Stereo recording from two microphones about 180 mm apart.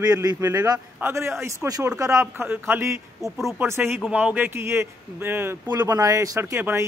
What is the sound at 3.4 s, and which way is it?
Speech, centre (ahead or behind).